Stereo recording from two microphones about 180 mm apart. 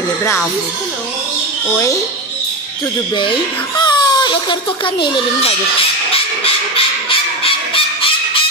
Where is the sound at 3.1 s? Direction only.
25° left (ahead or behind).